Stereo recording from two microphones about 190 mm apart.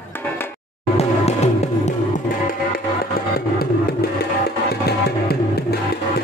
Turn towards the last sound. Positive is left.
turn(degrees=55)  # may be behind; listen again after turning